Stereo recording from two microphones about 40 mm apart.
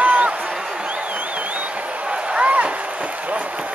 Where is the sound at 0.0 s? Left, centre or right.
Right.